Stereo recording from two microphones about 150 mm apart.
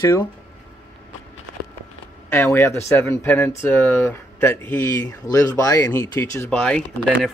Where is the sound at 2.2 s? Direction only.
15° left (ahead or behind).